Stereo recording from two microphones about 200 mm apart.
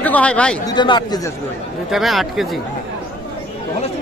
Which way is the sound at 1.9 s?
Centre (ahead or behind).